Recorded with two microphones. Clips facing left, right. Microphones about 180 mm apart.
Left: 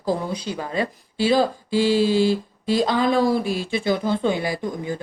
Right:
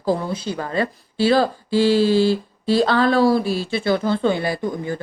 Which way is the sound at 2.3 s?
35° right (ahead or behind).